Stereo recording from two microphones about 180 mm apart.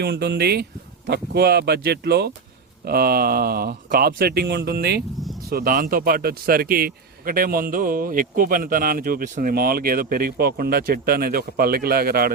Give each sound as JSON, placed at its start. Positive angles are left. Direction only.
{"t": 0.0, "sound": "a man's voice", "side_deg": -65}